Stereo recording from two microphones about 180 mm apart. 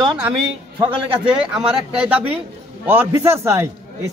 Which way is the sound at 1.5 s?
5° right (ahead or behind).